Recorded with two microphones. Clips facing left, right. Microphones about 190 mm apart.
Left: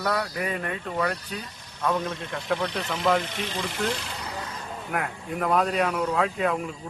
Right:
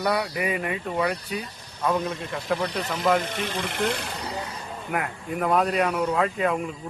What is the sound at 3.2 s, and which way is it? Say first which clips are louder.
Speech: right 2 dB; 50° right (ahead or behind).